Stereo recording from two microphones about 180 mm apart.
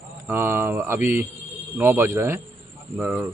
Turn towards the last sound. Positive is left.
turn(degrees=-10)  # may be behind; listen again after turning